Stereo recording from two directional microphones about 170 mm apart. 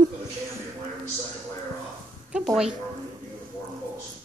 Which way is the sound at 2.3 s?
5° right (ahead or behind).